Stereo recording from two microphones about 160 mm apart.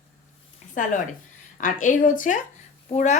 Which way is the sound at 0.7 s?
55° left (ahead or behind).